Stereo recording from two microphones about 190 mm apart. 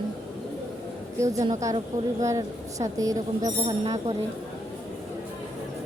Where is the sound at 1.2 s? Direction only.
15° right (ahead or behind).